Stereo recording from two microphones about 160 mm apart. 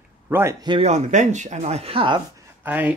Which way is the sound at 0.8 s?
45° right (ahead or behind).